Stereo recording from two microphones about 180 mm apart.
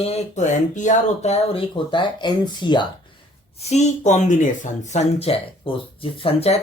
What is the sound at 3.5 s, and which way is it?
Speech, 35° left (ahead or behind).